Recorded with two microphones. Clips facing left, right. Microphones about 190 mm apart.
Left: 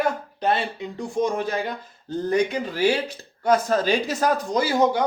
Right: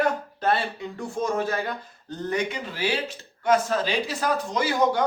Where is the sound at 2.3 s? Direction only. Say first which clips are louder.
Left 5 dB; 40° left (ahead or behind).